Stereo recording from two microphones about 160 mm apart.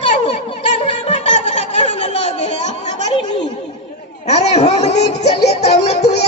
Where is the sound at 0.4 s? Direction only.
40° left (ahead or behind).